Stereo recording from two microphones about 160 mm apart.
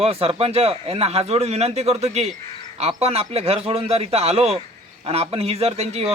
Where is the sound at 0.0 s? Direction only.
40° right (ahead or behind).